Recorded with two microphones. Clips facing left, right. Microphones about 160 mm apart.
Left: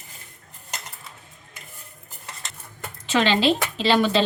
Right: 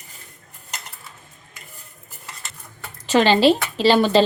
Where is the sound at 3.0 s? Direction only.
35° right (ahead or behind).